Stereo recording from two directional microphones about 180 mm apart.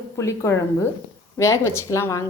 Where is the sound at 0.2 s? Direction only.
15° left (ahead or behind).